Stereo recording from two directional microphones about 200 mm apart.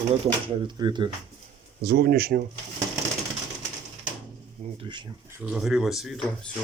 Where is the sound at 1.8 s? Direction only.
55° right (ahead or behind).